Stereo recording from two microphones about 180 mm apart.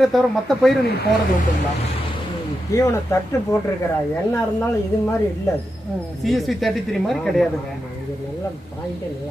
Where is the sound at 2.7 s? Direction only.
15° left (ahead or behind).